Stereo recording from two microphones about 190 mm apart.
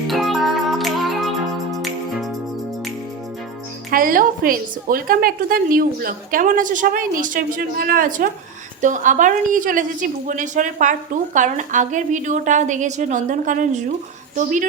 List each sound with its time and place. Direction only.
0.1 s music: centre (ahead or behind)
3.9 s a woman's voice: 45° right (ahead or behind)